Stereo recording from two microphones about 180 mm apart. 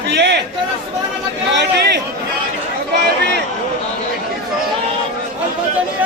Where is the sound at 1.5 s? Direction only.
75° right (ahead or behind).